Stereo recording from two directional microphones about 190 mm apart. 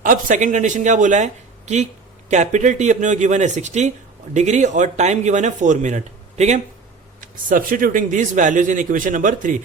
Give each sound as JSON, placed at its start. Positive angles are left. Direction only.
{"t": 0.0, "sound": "a man's voice", "side_deg": -45}